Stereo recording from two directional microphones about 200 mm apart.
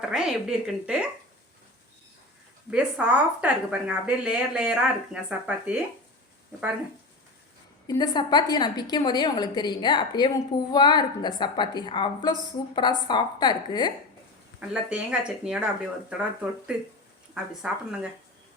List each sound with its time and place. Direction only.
0.1 s speech: 5° right (ahead or behind)
2.6 s speech: 5° right (ahead or behind)
7.9 s a woman's voice: 20° left (ahead or behind)
14.7 s speech: 5° right (ahead or behind)